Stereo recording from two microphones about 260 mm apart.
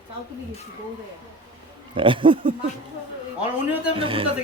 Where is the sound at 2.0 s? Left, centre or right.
Centre.